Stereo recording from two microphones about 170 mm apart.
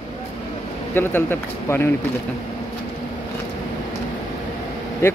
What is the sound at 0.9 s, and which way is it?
Speech, 10° left (ahead or behind).